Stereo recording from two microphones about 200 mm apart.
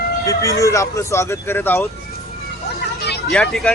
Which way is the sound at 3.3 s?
Centre (ahead or behind).